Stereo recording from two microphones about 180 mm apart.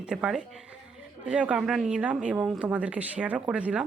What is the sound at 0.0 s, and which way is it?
A woman's voice, 5° right (ahead or behind).